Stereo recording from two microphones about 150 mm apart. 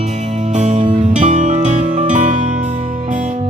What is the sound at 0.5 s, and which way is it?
Music, 55° right (ahead or behind).